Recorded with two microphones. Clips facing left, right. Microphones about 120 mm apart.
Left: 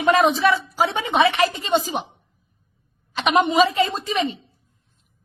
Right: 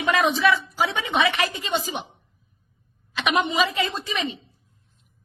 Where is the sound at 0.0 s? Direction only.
40° left (ahead or behind).